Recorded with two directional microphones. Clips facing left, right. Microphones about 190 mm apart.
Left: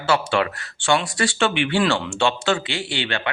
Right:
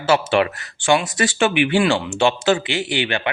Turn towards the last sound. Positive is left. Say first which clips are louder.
# right 4 dB
turn(degrees=-15)  # may be behind; listen again after turning